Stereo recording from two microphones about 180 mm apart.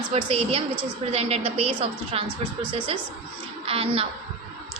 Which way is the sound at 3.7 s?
35° right (ahead or behind).